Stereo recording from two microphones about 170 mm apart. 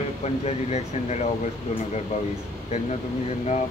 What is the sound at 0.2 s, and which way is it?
Speech, 40° left (ahead or behind).